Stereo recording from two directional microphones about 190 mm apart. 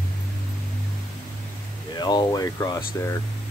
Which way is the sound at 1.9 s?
20° left (ahead or behind).